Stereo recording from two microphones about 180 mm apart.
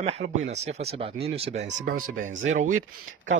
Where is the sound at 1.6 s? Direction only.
70° right (ahead or behind).